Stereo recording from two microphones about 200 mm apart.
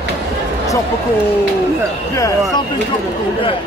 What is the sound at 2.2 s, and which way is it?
Speech, 15° left (ahead or behind).